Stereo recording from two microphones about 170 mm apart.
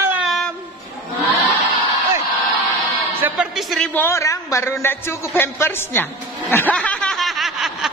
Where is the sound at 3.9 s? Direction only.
15° left (ahead or behind).